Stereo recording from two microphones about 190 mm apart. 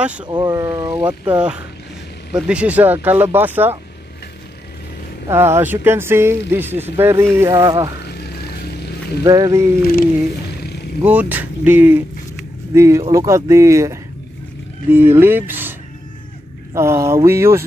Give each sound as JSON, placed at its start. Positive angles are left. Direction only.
{"t": 0.2, "sound": "speech", "side_deg": -20}
{"t": 5.3, "sound": "speech", "side_deg": -15}
{"t": 9.2, "sound": "speech", "side_deg": -20}
{"t": 11.1, "sound": "speech", "side_deg": -10}
{"t": 16.7, "sound": "speech", "side_deg": -15}